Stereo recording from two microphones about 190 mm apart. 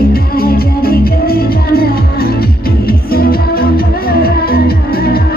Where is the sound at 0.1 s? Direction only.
50° left (ahead or behind).